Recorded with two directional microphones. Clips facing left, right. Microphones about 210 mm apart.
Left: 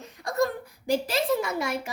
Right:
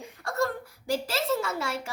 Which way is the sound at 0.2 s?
15° left (ahead or behind).